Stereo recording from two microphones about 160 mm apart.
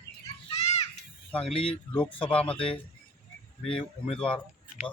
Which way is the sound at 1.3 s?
5° left (ahead or behind).